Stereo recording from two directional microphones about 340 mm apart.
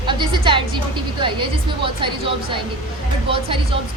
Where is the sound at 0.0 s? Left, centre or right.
Centre.